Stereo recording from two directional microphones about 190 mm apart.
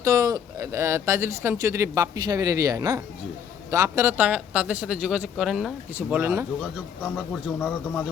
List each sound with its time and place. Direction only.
0.0 s speech: 15° right (ahead or behind)